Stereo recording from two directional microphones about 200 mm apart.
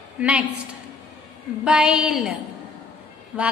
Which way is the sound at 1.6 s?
5° right (ahead or behind).